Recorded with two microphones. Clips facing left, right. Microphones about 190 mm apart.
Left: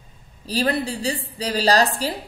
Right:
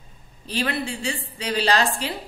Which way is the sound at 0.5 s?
35° left (ahead or behind).